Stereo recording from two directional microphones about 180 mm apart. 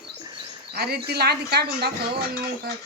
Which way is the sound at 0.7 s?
65° right (ahead or behind).